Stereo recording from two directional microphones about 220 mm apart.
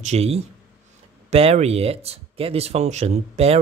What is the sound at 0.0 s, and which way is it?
Speech, 30° right (ahead or behind).